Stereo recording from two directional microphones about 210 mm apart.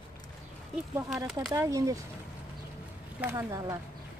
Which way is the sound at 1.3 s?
Centre (ahead or behind).